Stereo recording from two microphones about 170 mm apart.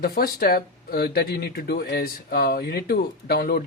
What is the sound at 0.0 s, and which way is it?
Speech, 65° left (ahead or behind).